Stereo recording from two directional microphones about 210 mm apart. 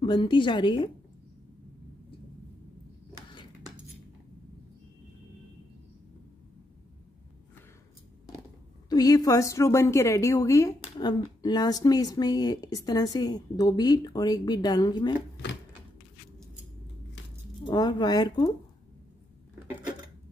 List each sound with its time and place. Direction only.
0.0 s speech: 20° left (ahead or behind)
8.8 s a woman's voice: 15° left (ahead or behind)
17.6 s speech: 20° left (ahead or behind)